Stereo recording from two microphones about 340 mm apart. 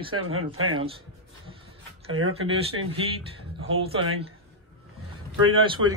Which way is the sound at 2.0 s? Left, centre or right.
Right.